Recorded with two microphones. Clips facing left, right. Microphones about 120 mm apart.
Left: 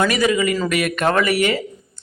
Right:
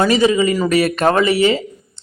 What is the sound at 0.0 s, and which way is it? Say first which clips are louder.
Speech: right 4 dB; 30° right (ahead or behind).